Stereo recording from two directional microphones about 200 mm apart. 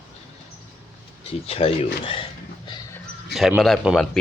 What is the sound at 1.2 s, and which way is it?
Speech, 30° left (ahead or behind).